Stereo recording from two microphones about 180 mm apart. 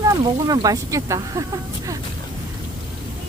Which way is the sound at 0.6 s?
20° right (ahead or behind).